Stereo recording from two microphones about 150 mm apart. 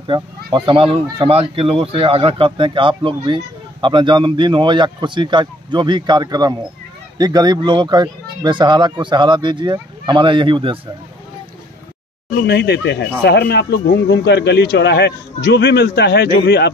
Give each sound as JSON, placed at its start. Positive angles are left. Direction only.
{"t": 0.0, "sound": "speech", "side_deg": -30}
{"t": 12.4, "sound": "a man's voice", "side_deg": 90}